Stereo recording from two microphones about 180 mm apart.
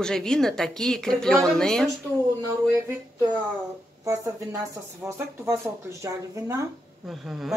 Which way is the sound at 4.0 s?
15° right (ahead or behind).